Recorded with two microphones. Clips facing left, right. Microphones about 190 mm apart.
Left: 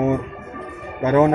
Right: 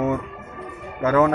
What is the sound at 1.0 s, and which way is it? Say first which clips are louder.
Speech: left 3 dB; 25° left (ahead or behind).